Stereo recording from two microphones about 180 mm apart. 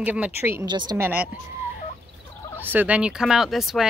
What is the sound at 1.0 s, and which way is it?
Speech, 10° right (ahead or behind).